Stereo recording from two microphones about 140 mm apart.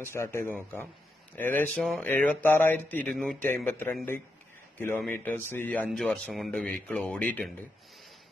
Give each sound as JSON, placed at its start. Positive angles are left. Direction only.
{"t": 0.0, "sound": "speech", "side_deg": 20}
{"t": 5.9, "sound": "speech", "side_deg": 0}